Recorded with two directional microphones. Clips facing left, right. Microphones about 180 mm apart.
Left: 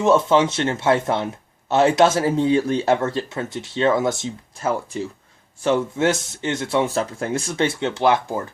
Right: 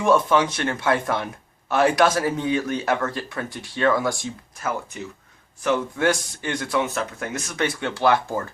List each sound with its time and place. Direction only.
0.0 s speech: 25° left (ahead or behind)